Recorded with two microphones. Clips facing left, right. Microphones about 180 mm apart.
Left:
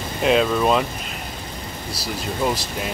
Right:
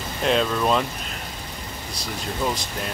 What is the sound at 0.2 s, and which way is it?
Speech, 5° left (ahead or behind).